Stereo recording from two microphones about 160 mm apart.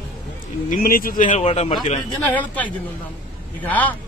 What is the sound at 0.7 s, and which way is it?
A man's voice, 60° left (ahead or behind).